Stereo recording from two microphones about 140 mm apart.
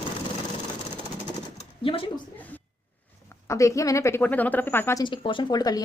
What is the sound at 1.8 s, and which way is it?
Speech, 40° left (ahead or behind).